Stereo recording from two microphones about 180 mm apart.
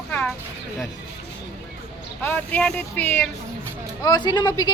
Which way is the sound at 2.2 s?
10° left (ahead or behind).